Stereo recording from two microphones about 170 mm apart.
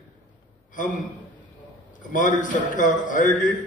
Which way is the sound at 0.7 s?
50° left (ahead or behind).